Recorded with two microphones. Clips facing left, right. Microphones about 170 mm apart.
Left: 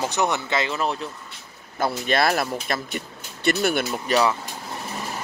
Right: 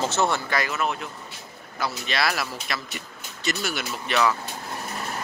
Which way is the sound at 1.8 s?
50° left (ahead or behind).